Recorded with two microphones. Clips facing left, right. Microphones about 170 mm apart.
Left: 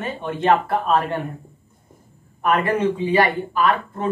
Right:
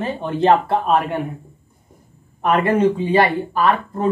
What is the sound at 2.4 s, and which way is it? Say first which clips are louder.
Speech: right 3 dB; 25° right (ahead or behind).